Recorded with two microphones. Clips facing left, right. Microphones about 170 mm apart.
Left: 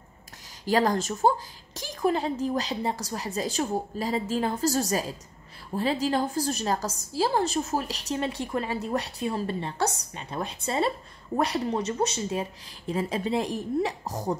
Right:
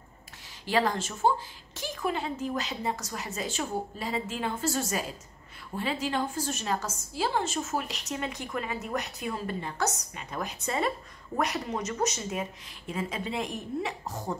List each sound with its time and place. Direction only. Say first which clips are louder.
0.7 s a woman's voice: left 4 dB; 40° left (ahead or behind)